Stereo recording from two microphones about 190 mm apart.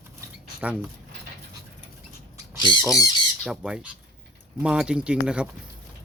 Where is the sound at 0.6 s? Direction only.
5° right (ahead or behind).